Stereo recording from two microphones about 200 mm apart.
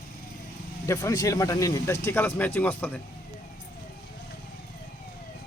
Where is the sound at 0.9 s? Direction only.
15° left (ahead or behind).